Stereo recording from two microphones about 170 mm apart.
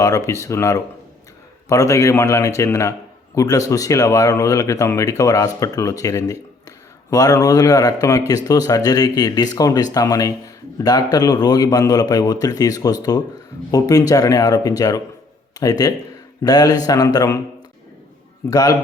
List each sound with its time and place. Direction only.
0.0 s a man's voice: 20° left (ahead or behind)
18.5 s speech: 20° left (ahead or behind)